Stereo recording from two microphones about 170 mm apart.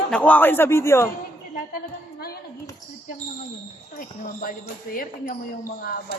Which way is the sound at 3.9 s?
55° left (ahead or behind).